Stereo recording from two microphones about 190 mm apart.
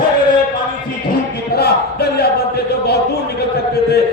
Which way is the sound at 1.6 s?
55° left (ahead or behind).